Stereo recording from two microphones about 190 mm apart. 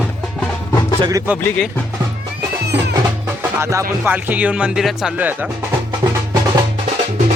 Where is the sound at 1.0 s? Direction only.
20° right (ahead or behind).